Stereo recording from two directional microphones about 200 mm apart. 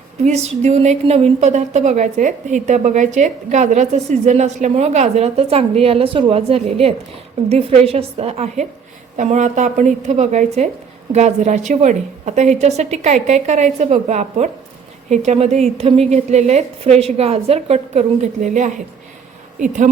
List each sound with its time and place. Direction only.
0.3 s a woman's voice: 35° right (ahead or behind)